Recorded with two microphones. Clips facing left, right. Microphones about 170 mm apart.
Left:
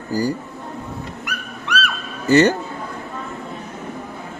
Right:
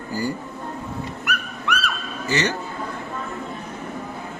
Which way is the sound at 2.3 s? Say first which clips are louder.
Left 10 dB; 50° left (ahead or behind).